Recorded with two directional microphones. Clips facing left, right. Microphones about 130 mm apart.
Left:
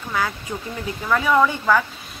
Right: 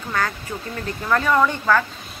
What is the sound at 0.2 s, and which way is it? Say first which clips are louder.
Speech: even; 10° left (ahead or behind).